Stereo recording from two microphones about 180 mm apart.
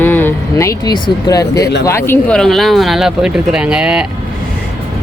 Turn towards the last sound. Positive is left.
turn(degrees=-5)  # may be behind; listen again after turning